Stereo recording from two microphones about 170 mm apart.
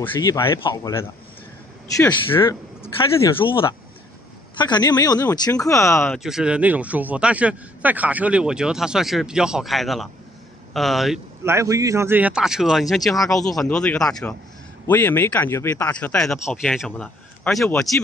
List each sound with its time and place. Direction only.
0.0 s a man's voice: 20° left (ahead or behind)
3.3 s a man's voice: 30° left (ahead or behind)
6.1 s speech: 5° right (ahead or behind)
11.4 s a man's voice: 15° right (ahead or behind); by 17.9 s centre (ahead or behind)